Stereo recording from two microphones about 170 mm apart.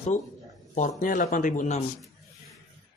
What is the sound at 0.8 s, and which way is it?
Speech, 50° left (ahead or behind).